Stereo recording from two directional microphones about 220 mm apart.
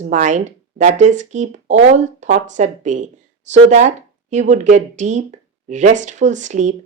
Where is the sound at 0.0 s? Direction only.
35° right (ahead or behind).